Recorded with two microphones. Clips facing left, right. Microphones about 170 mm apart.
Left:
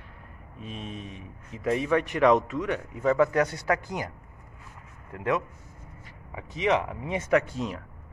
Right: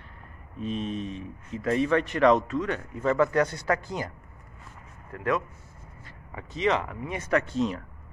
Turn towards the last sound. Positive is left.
turn(degrees=10)  # may be behind; listen again after turning